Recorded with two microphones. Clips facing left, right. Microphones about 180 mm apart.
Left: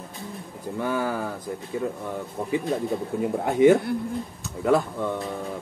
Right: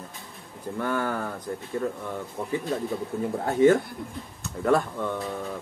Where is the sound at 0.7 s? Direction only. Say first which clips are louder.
Left 1 dB; 10° left (ahead or behind).